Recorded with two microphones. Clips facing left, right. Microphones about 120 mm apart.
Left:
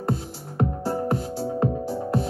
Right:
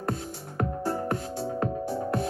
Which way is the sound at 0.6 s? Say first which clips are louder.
Left 4 dB; 30° left (ahead or behind).